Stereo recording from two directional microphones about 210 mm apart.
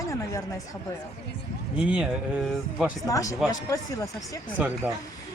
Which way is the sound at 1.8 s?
5° right (ahead or behind).